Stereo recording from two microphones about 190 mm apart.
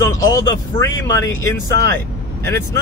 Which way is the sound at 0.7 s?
20° left (ahead or behind).